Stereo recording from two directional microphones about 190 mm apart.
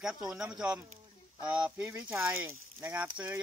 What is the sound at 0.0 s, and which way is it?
Speech, 5° right (ahead or behind).